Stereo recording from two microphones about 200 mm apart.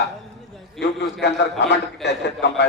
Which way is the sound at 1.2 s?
60° left (ahead or behind).